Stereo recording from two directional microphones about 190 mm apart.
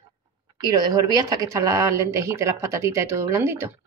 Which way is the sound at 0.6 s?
20° right (ahead or behind).